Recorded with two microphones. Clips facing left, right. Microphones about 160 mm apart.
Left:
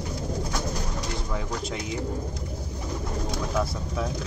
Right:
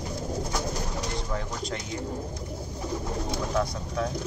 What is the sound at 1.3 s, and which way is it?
Speech, 5° left (ahead or behind).